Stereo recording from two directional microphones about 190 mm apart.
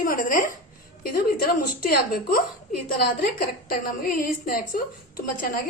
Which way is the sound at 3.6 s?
50° left (ahead or behind).